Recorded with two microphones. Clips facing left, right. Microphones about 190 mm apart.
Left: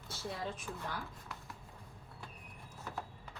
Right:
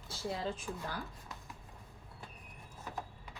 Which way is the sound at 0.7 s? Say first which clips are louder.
Right 3 dB; 15° right (ahead or behind).